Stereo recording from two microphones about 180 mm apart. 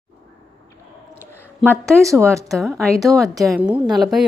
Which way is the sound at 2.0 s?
15° right (ahead or behind).